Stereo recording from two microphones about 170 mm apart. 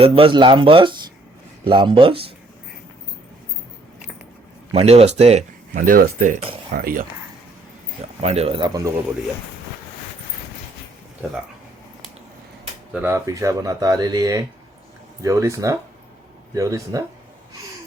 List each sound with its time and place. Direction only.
0.0 s speech: 30° right (ahead or behind)
4.7 s speech: 35° right (ahead or behind)
5.7 s speech: 55° right (ahead or behind)
8.2 s speech: 35° right (ahead or behind)
12.9 s speech: 10° right (ahead or behind)